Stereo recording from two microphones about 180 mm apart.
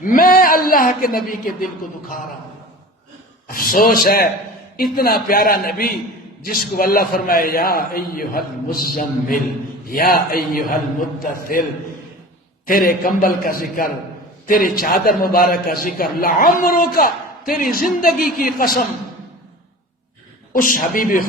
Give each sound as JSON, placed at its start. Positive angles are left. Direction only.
{"t": 0.0, "sound": "a man's voice", "side_deg": 50}
{"t": 3.4, "sound": "a man's voice", "side_deg": 55}
{"t": 12.6, "sound": "a man's voice", "side_deg": 55}
{"t": 20.5, "sound": "a man's voice", "side_deg": 50}